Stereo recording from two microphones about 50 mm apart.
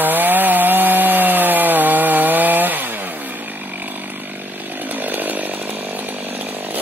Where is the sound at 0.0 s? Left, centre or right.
Right.